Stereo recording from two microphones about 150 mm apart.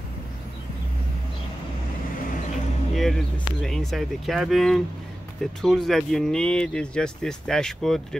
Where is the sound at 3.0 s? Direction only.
Centre (ahead or behind).